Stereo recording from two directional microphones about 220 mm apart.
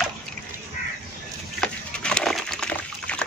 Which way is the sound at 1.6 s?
5° left (ahead or behind).